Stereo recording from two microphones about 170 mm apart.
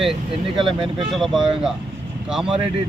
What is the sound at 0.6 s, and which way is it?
Speech, 30° right (ahead or behind).